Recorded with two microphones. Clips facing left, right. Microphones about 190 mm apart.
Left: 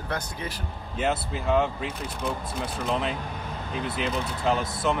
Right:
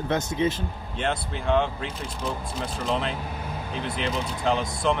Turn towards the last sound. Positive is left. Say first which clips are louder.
# right 1 dB
turn(degrees=5)  # may be behind; listen again after turning